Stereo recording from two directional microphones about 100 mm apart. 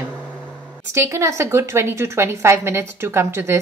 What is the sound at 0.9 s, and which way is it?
Speech, 30° right (ahead or behind).